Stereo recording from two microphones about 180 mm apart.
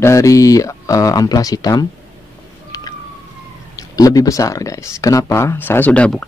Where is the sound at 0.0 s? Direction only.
15° left (ahead or behind).